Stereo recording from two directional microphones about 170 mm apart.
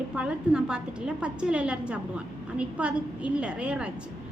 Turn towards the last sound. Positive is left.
turn(degrees=-5)  # may be behind; listen again after turning